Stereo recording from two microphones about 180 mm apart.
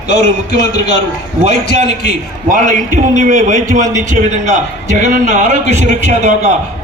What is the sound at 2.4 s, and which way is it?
A man's voice, 45° right (ahead or behind).